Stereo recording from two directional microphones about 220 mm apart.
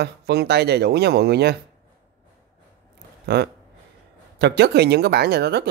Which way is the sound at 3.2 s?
50° right (ahead or behind).